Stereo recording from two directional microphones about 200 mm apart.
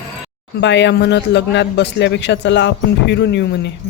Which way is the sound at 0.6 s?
60° left (ahead or behind).